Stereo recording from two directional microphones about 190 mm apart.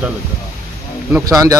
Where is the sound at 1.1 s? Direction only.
20° right (ahead or behind).